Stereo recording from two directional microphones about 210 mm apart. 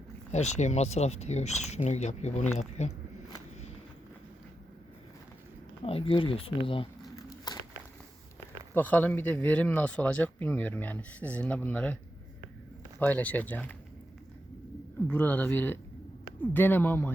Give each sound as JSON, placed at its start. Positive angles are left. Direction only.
{"t": 0.3, "sound": "speech", "side_deg": 35}
{"t": 5.8, "sound": "crumpling", "side_deg": 25}
{"t": 8.7, "sound": "speech", "side_deg": 10}
{"t": 13.0, "sound": "speech", "side_deg": 10}
{"t": 15.0, "sound": "speech", "side_deg": 10}